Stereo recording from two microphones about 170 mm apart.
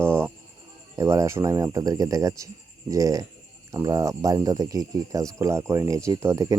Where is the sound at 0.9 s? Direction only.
20° right (ahead or behind).